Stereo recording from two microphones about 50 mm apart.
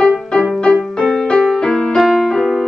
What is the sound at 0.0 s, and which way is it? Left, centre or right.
Music, centre.